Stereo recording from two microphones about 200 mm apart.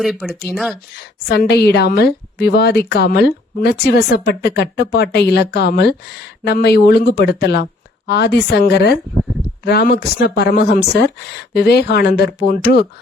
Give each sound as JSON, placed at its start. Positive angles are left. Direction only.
{"t": 0.0, "sound": "speech", "side_deg": 0}
{"t": 1.3, "sound": "a woman's voice", "side_deg": 55}